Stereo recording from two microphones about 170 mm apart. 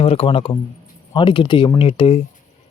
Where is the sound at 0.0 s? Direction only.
35° left (ahead or behind).